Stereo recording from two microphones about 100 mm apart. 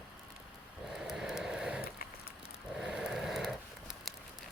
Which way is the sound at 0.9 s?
5° right (ahead or behind).